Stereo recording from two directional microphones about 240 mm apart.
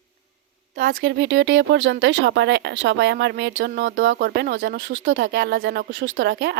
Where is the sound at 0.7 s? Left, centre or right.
Right.